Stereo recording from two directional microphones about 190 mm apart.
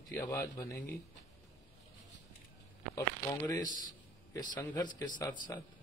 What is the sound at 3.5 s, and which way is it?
A man's voice, 20° left (ahead or behind).